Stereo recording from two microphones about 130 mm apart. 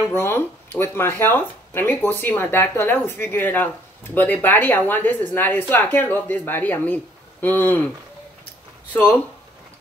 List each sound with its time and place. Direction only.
0.0 s speech: 20° left (ahead or behind)